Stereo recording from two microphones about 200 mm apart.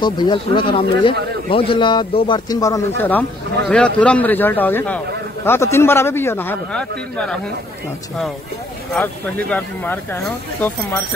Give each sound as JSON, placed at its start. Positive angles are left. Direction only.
{"t": 0.0, "sound": "a man's voice", "side_deg": 20}
{"t": 8.9, "sound": "a man's voice", "side_deg": 5}